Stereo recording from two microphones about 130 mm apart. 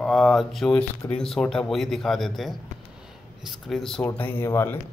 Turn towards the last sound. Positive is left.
turn(degrees=20)  # may be behind; listen again after turning